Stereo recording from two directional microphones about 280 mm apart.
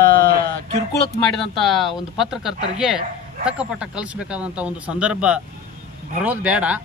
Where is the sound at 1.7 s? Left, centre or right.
Centre.